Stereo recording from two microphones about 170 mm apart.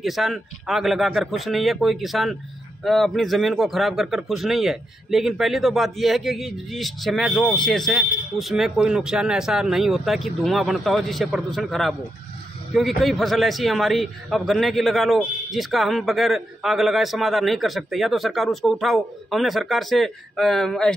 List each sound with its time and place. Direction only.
0.0 s a man's voice: centre (ahead or behind)